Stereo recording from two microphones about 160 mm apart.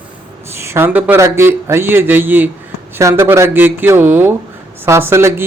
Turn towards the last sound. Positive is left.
turn(degrees=-15)  # may be behind; listen again after turning